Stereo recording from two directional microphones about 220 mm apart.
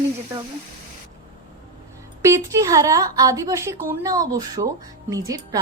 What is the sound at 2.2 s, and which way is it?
A woman's voice, 15° right (ahead or behind).